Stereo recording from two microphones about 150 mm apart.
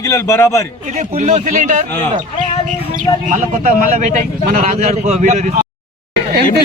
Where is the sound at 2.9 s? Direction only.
60° right (ahead or behind).